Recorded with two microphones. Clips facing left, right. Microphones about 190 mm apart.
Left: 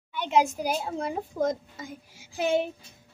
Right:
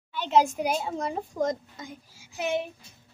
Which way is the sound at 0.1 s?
15° left (ahead or behind).